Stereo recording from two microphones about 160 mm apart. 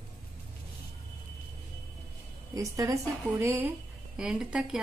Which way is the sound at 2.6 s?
20° right (ahead or behind).